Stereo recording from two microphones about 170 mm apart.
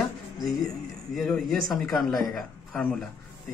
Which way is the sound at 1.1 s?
Centre (ahead or behind).